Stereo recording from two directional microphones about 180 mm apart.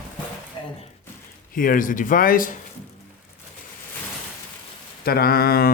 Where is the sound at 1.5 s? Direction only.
50° left (ahead or behind).